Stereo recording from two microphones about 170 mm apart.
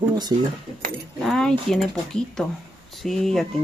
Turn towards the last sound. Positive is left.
turn(degrees=0)  # may be behind; listen again after turning